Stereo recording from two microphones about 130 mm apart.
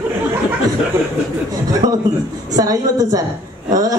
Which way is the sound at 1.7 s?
30° right (ahead or behind).